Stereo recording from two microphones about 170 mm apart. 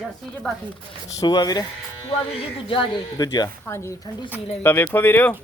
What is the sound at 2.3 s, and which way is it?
Speech, 35° left (ahead or behind).